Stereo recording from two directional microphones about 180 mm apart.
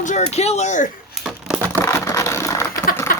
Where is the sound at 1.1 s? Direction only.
5° right (ahead or behind).